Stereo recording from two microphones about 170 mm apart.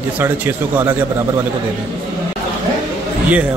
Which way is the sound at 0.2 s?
10° right (ahead or behind).